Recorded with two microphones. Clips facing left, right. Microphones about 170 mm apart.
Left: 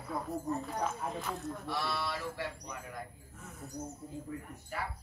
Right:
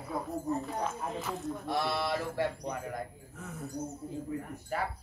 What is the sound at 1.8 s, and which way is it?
Speech, 55° right (ahead or behind).